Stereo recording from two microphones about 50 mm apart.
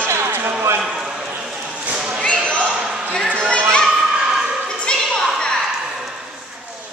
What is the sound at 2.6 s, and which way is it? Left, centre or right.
Basketball bounce, centre.